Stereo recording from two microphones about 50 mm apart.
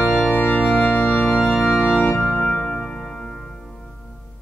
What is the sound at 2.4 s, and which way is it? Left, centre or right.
Music, left.